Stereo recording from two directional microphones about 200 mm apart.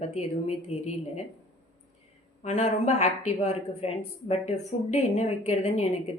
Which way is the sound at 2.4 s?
35° left (ahead or behind).